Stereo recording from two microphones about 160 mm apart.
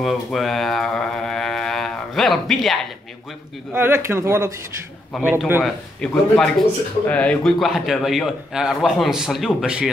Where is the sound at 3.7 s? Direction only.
15° right (ahead or behind).